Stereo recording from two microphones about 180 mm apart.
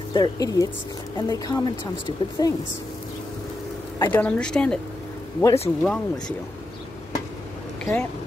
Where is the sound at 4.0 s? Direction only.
10° left (ahead or behind).